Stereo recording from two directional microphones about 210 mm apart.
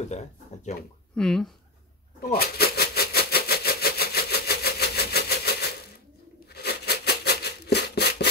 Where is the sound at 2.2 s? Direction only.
45° left (ahead or behind).